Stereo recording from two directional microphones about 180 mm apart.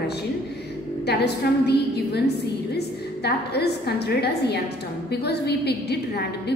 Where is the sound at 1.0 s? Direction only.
65° left (ahead or behind).